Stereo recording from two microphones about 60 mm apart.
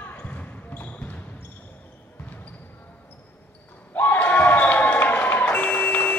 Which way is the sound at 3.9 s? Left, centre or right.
Left.